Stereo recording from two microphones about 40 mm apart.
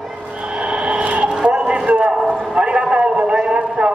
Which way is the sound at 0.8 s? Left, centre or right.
Right.